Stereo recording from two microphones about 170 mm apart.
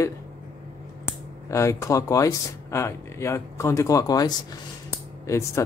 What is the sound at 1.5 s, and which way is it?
Speech, 20° left (ahead or behind).